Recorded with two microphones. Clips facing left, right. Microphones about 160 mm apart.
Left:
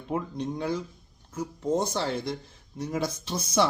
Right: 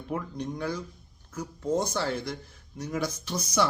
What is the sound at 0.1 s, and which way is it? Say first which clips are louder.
Speech: left 3 dB; 25° left (ahead or behind).